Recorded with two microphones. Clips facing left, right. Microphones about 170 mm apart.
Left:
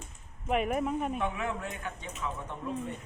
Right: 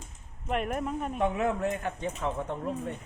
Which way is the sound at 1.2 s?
40° right (ahead or behind).